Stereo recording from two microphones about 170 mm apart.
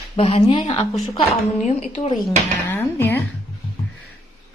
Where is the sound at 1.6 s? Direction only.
45° left (ahead or behind).